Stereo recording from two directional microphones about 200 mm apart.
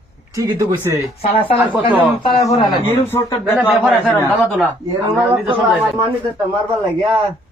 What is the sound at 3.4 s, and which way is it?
A woman's voice, 5° right (ahead or behind).